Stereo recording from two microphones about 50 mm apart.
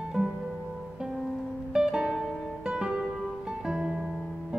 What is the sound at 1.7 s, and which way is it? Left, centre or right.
Music, centre.